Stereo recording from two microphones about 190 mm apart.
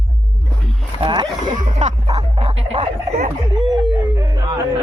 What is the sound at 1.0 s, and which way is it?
Dog, 25° right (ahead or behind).